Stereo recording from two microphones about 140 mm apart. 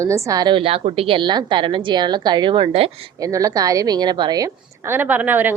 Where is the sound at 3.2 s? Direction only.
25° right (ahead or behind).